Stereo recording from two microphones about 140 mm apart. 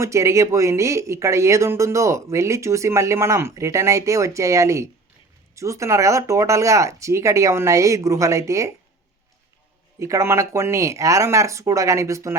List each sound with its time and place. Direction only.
0.0 s speech: 20° right (ahead or behind)
10.0 s speech: 20° right (ahead or behind)